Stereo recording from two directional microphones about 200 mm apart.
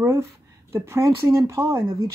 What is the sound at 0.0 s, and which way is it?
A woman's voice, 15° right (ahead or behind).